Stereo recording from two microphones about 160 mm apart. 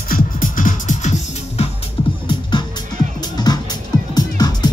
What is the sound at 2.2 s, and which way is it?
Music, 30° left (ahead or behind).